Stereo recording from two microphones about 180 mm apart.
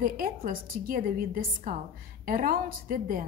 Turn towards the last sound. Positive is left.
turn(degrees=-50)  # may be behind; listen again after turning